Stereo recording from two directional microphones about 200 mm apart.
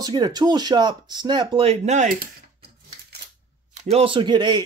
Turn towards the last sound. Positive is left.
turn(degrees=-20)  # may be behind; listen again after turning